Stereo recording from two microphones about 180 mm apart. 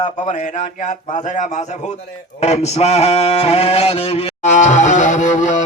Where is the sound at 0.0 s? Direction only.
40° left (ahead or behind).